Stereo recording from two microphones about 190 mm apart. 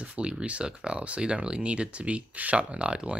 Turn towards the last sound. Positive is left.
turn(degrees=-5)  # may be behind; listen again after turning